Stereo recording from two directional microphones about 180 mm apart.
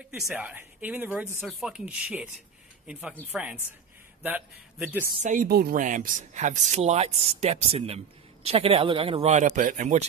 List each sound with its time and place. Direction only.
0.3 s speech: 10° right (ahead or behind)
4.2 s speech: 10° right (ahead or behind)
5.2 s speech: 50° right (ahead or behind)